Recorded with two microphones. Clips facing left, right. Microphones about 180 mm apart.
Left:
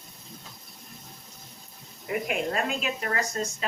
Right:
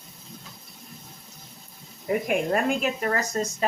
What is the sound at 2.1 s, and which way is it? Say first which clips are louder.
A woman's voice: right 5 dB; 50° right (ahead or behind).